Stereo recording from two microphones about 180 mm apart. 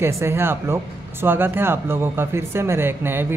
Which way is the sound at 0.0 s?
15° right (ahead or behind).